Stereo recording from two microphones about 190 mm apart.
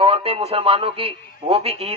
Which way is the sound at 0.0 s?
30° right (ahead or behind).